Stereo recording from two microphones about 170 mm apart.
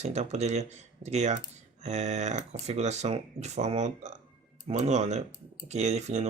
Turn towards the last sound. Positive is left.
turn(degrees=-40)  # may be behind; listen again after turning